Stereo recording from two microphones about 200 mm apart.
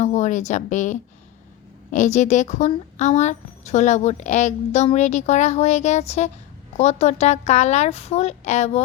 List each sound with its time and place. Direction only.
0.0 s a woman's voice: 35° left (ahead or behind)